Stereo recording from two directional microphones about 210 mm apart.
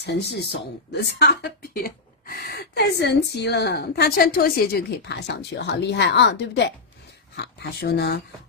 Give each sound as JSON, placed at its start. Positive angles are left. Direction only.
{"t": 0.0, "sound": "speech", "side_deg": 50}